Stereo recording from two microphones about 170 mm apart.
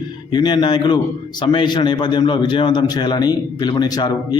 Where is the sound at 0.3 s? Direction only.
25° left (ahead or behind).